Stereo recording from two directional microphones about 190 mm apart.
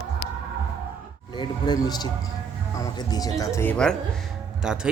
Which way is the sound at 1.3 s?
25° left (ahead or behind).